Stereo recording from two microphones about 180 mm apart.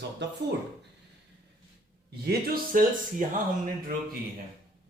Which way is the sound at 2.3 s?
55° right (ahead or behind).